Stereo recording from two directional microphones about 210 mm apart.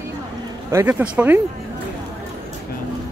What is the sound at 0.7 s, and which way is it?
Speech, 10° right (ahead or behind).